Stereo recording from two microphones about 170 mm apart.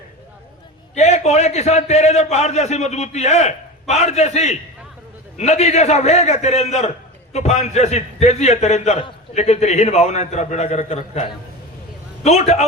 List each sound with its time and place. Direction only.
0.9 s a man's voice: 40° left (ahead or behind)